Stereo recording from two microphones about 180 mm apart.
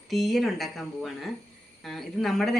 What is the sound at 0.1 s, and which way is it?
A woman's voice, centre (ahead or behind).